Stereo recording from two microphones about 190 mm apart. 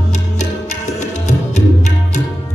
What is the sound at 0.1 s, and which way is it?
Music, 40° left (ahead or behind).